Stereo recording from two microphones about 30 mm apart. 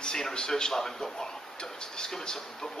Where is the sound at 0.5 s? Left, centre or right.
Centre.